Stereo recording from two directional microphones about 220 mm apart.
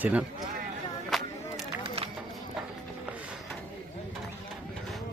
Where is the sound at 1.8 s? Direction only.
25° right (ahead or behind).